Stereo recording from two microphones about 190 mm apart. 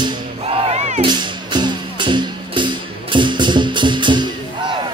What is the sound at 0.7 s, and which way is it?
Music, 35° right (ahead or behind).